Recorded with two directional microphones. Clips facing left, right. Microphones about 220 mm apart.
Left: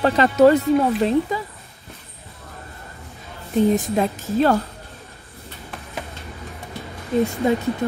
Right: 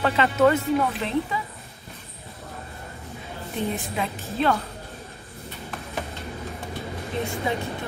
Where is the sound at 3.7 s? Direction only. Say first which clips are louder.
Left 9 dB; 45° left (ahead or behind).